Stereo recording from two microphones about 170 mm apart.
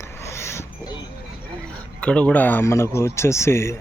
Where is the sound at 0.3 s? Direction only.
15° left (ahead or behind).